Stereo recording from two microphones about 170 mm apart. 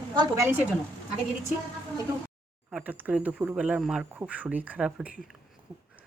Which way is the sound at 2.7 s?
5° right (ahead or behind).